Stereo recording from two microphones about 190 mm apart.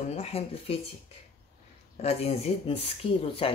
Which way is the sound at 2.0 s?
35° left (ahead or behind).